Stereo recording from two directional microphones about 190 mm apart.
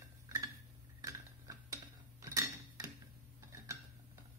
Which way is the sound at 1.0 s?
20° right (ahead or behind).